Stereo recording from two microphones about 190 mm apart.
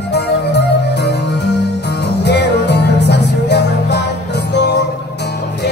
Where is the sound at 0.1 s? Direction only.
60° left (ahead or behind).